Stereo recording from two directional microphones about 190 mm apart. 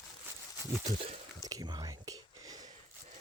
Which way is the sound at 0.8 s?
35° right (ahead or behind).